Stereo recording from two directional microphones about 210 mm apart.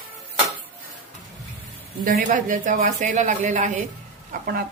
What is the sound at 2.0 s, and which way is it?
Speech, 40° right (ahead or behind).